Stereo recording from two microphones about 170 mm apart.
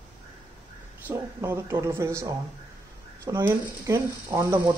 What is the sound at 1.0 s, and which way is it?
Speech, 15° right (ahead or behind).